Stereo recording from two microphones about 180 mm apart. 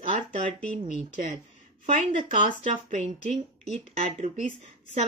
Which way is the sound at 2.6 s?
35° right (ahead or behind).